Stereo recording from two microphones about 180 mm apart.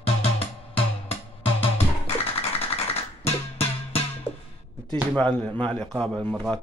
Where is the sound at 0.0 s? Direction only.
35° left (ahead or behind).